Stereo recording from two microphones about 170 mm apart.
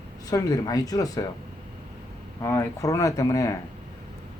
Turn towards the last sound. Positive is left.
turn(degrees=20)  # may be behind; listen again after turning